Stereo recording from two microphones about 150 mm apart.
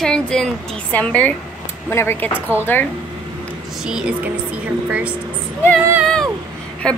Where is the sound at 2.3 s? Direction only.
10° right (ahead or behind).